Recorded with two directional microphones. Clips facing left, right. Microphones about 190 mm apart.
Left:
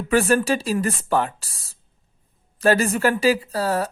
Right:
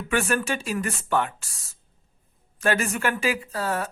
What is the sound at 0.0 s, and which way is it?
Speech, 35° left (ahead or behind).